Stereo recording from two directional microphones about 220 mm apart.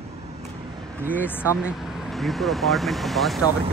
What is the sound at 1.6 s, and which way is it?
Speech, centre (ahead or behind).